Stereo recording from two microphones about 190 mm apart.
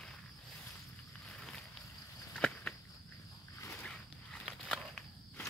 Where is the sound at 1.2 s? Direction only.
5° left (ahead or behind).